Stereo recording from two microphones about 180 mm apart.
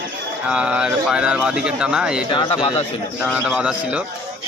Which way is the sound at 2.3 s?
25° left (ahead or behind).